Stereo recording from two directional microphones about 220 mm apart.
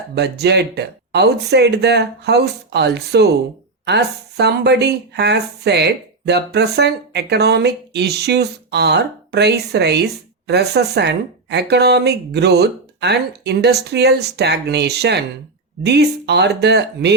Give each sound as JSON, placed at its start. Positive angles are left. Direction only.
{"t": 0.1, "sound": "speech", "side_deg": -50}